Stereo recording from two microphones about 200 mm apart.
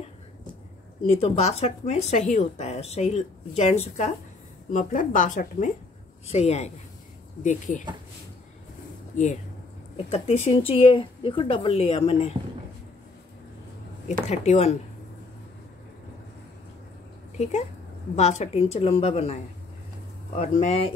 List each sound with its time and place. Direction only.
1.2 s a woman's voice: 30° left (ahead or behind)
9.1 s speech: 35° left (ahead or behind)
14.3 s a woman's voice: 35° left (ahead or behind)
17.4 s a woman's voice: 35° left (ahead or behind)
20.3 s a woman's voice: 35° left (ahead or behind)